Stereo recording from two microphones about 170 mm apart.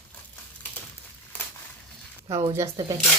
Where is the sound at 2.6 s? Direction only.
20° right (ahead or behind).